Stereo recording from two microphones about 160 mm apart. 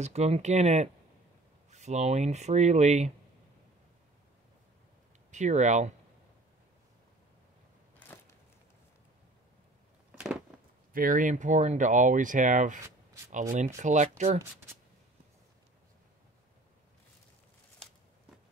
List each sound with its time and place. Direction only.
0.0 s speech: 45° right (ahead or behind)
5.3 s speech: 45° right (ahead or behind)
10.1 s a sound: 5° right (ahead or behind)
10.9 s speech: 60° right (ahead or behind)